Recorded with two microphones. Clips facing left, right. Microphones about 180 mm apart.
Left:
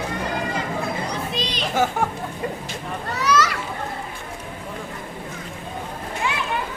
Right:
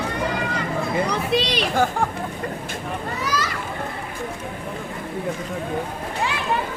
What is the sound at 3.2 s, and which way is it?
Children playing, 75° left (ahead or behind).